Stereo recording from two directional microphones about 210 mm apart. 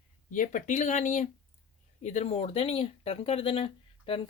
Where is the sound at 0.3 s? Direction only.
35° left (ahead or behind).